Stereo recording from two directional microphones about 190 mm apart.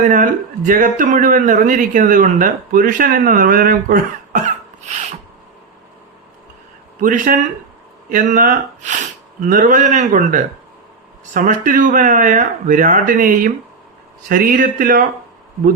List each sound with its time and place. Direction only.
0.1 s a man's voice: 40° right (ahead or behind)
7.0 s a man's voice: 45° right (ahead or behind)